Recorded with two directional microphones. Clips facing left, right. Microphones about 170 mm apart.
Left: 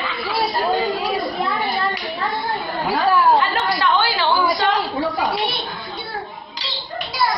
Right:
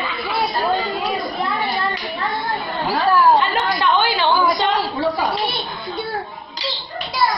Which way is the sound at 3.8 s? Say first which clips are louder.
Right 2 dB; 20° right (ahead or behind).